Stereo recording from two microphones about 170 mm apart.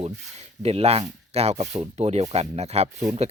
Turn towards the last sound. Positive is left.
turn(degrees=-40)  # may be behind; listen again after turning